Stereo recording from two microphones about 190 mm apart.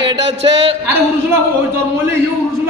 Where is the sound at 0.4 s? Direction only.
30° right (ahead or behind).